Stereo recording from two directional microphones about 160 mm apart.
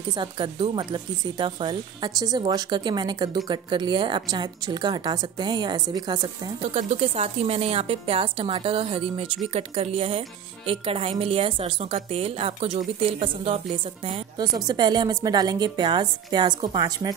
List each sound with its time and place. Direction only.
0.1 s speech: 30° right (ahead or behind)
6.6 s a woman's voice: 40° right (ahead or behind)
14.4 s speech: 25° right (ahead or behind)